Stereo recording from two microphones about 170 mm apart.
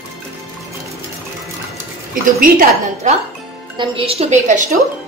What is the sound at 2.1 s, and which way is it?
A woman's voice, 55° right (ahead or behind).